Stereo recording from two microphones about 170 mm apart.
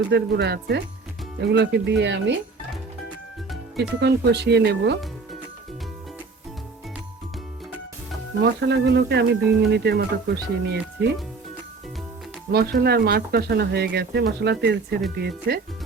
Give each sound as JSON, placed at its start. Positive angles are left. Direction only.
{"t": 0.1, "sound": "speech", "side_deg": -75}
{"t": 1.4, "sound": "speech", "side_deg": -90}
{"t": 3.8, "sound": "speech", "side_deg": -85}
{"t": 8.4, "sound": "speech", "side_deg": -90}
{"t": 12.5, "sound": "speech", "side_deg": -70}
{"t": 15.2, "sound": "speech", "side_deg": -65}